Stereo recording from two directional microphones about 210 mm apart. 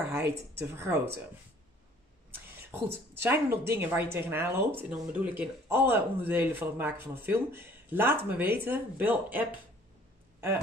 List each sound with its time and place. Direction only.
0.0 s a sound: 10° right (ahead or behind)
0.6 s speech: 10° right (ahead or behind)
2.3 s speech: 10° right (ahead or behind)